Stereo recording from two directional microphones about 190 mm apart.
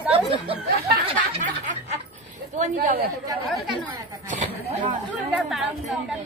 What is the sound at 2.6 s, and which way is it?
Speech, 40° right (ahead or behind).